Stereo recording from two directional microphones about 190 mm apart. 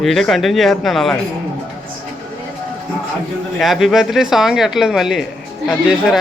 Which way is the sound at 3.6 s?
Centre (ahead or behind).